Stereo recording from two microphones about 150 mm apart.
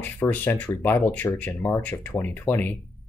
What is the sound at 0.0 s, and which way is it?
Speech, 10° left (ahead or behind).